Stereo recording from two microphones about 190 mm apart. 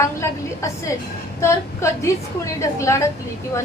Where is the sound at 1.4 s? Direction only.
15° left (ahead or behind).